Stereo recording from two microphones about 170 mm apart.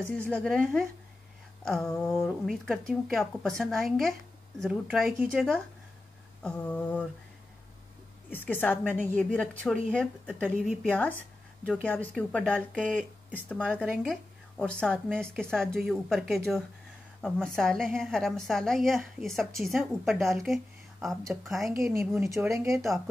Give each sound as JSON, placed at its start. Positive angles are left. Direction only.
{"t": 0.1, "sound": "a woman's voice", "side_deg": 5}
{"t": 8.3, "sound": "a woman's voice", "side_deg": 10}
{"t": 21.7, "sound": "speech", "side_deg": -15}